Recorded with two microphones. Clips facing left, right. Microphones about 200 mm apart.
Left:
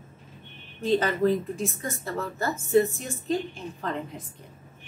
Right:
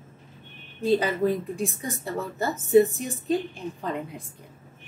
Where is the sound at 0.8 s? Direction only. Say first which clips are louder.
Even; 10° right (ahead or behind).